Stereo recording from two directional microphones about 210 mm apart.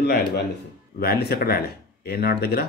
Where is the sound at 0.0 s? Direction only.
50° left (ahead or behind).